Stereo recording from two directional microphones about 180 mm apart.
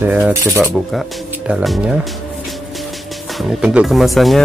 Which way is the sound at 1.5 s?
5° right (ahead or behind).